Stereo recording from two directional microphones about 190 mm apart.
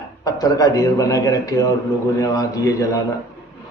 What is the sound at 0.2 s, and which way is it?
Speech, 20° left (ahead or behind).